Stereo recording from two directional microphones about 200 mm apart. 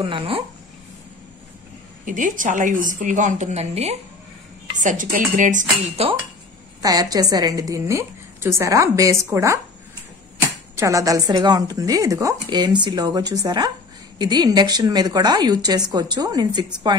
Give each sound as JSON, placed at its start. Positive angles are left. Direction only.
{"t": 0.0, "sound": "a woman's voice", "side_deg": -25}
{"t": 2.0, "sound": "a woman's voice", "side_deg": -40}
{"t": 6.8, "sound": "a woman's voice", "side_deg": -20}
{"t": 10.8, "sound": "a woman's voice", "side_deg": -15}